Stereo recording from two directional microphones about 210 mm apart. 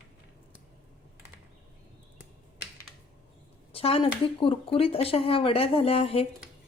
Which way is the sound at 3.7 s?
25° left (ahead or behind).